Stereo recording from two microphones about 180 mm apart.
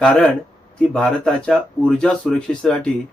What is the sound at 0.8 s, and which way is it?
Speech, 5° left (ahead or behind).